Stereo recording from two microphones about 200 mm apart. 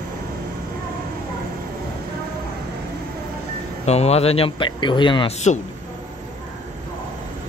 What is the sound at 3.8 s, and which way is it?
Speech, 30° left (ahead or behind).